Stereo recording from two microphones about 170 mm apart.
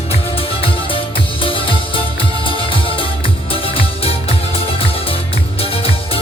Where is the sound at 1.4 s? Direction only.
30° left (ahead or behind).